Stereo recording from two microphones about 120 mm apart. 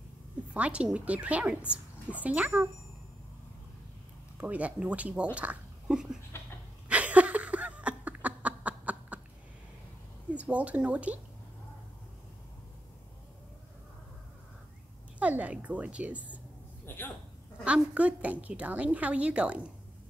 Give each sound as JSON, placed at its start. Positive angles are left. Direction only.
{"t": 0.5, "sound": "a woman's voice", "side_deg": -10}
{"t": 4.4, "sound": "a woman's voice", "side_deg": -10}
{"t": 6.3, "sound": "dog", "side_deg": 20}
{"t": 6.9, "sound": "a sound", "side_deg": -10}
{"t": 10.3, "sound": "a woman's voice", "side_deg": -10}
{"t": 15.1, "sound": "a woman's voice", "side_deg": -10}
{"t": 16.8, "sound": "a sound", "side_deg": 15}
{"t": 17.6, "sound": "a woman's voice", "side_deg": -10}